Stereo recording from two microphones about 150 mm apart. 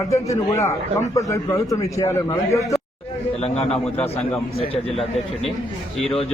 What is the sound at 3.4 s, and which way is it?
Speech, 45° left (ahead or behind).